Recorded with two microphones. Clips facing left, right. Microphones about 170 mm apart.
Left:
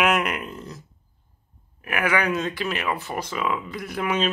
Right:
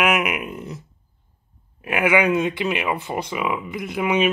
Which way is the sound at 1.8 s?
20° right (ahead or behind).